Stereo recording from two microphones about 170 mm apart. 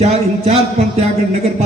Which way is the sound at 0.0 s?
40° right (ahead or behind).